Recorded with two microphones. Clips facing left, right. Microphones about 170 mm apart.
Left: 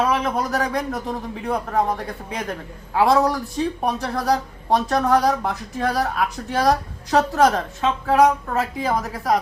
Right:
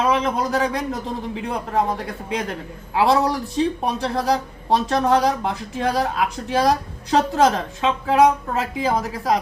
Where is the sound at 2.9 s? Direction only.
25° right (ahead or behind).